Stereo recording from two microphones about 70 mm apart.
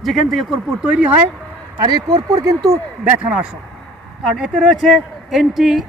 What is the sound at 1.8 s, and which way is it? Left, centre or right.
Speech, right.